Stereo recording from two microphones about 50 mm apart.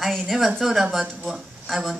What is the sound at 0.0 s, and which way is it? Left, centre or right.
Speech, centre.